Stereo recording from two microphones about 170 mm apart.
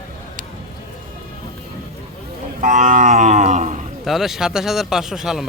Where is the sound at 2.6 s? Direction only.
50° right (ahead or behind).